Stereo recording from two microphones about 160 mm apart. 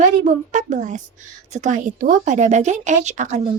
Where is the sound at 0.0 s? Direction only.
50° right (ahead or behind).